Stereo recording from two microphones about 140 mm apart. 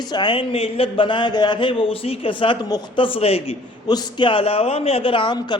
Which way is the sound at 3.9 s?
30° left (ahead or behind).